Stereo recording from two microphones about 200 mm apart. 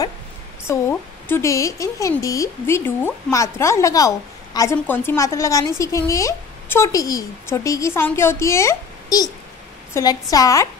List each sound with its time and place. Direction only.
0.7 s a woman's voice: 10° left (ahead or behind)